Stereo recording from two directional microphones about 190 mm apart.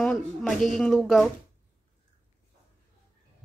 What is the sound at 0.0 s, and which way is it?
Speech, centre (ahead or behind).